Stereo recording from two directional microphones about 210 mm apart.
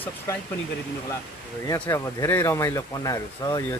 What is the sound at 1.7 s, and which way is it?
Speech, 15° left (ahead or behind).